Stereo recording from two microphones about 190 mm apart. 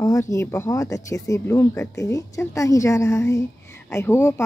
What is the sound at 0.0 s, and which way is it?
Speech, 15° left (ahead or behind).